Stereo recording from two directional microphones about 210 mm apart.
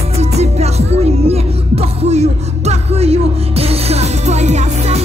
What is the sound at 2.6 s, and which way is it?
Music, 30° right (ahead or behind).